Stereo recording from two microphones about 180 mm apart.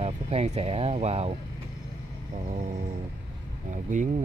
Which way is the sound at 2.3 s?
40° right (ahead or behind).